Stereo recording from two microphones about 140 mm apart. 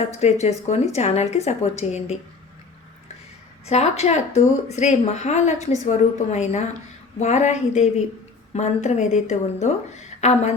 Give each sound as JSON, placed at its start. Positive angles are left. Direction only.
{"t": 0.2, "sound": "a woman's voice", "side_deg": 50}
{"t": 3.7, "sound": "a woman's voice", "side_deg": 50}